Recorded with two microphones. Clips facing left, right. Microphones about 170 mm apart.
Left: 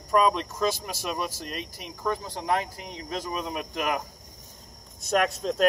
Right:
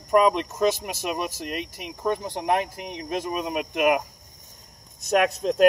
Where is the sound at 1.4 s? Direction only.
60° right (ahead or behind).